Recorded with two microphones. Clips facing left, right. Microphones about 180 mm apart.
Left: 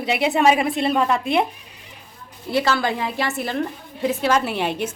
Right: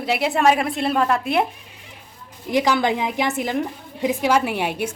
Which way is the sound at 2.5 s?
15° right (ahead or behind).